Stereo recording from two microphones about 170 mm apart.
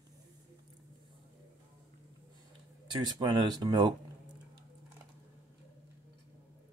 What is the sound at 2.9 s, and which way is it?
Speech, 25° right (ahead or behind).